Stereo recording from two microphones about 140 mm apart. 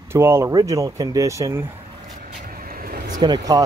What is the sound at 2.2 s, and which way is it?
Vehicle, 85° right.